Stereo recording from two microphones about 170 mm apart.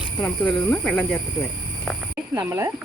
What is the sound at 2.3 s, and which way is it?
Speech, 15° right (ahead or behind).